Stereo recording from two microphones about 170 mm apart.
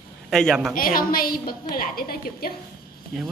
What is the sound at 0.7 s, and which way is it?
A woman's voice, 55° left (ahead or behind).